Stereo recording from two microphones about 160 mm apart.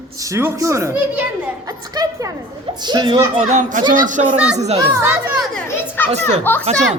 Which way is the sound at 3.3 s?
45° right (ahead or behind).